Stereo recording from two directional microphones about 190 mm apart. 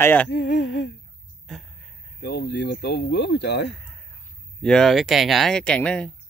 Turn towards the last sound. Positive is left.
turn(degrees=5)  # may be behind; listen again after turning